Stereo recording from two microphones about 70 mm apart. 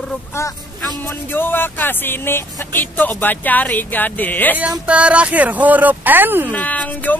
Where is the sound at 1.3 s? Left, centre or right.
Left.